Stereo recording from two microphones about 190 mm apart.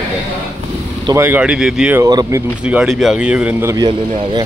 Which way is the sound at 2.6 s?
5° right (ahead or behind).